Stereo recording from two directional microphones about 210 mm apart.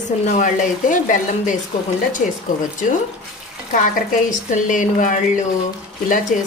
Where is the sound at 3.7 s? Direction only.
35° left (ahead or behind).